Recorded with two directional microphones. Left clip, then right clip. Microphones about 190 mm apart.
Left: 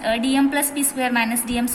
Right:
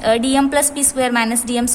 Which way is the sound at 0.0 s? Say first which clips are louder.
Right 5 dB; 50° right (ahead or behind).